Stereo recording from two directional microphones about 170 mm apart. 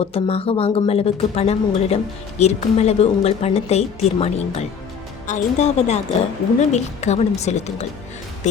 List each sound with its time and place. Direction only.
0.0 s speech: 35° left (ahead or behind)